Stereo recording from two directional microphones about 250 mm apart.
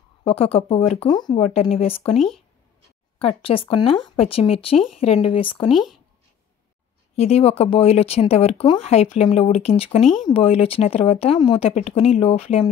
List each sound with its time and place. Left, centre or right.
0.2 s speech: left
2.1 s speech: centre
3.2 s speech: left
5.7 s speech: centre
7.2 s speech: left